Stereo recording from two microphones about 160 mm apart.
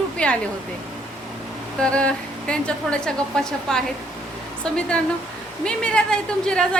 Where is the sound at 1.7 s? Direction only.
5° left (ahead or behind).